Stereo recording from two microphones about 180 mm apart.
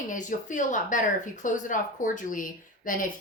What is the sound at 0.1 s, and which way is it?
A woman's voice, 45° left (ahead or behind).